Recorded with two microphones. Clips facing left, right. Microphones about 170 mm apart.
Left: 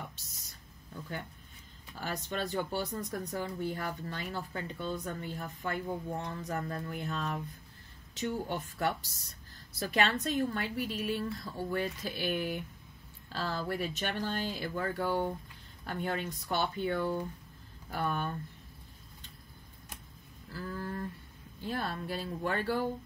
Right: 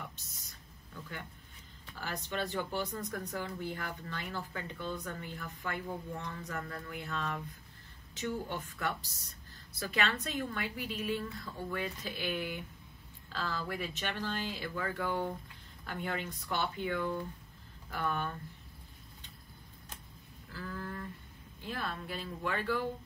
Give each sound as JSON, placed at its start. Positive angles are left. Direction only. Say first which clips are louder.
{"t": 2.0, "sound": "speech", "louder": "left 2 dB", "side_deg": 35}
{"t": 20.6, "sound": "a sound", "louder": "left 4 dB", "side_deg": 35}
{"t": 21.6, "sound": "speech", "louder": "left 4 dB", "side_deg": 40}